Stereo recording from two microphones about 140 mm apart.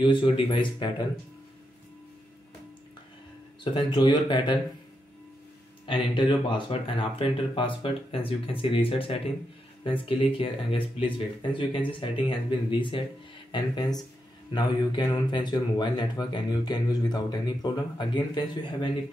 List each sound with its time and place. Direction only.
0.0 s speech: 35° left (ahead or behind)
3.6 s speech: 35° left (ahead or behind)
5.9 s speech: 35° left (ahead or behind)